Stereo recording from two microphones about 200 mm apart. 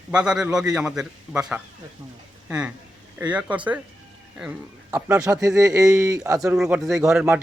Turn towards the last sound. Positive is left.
turn(degrees=-5)  # may be behind; listen again after turning